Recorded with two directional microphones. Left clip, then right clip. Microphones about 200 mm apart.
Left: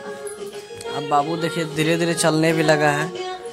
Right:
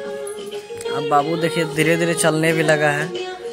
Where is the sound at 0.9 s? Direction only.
5° left (ahead or behind); by 3.1 s 20° left (ahead or behind).